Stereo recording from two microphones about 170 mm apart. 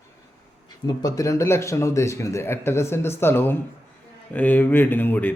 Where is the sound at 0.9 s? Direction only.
20° left (ahead or behind).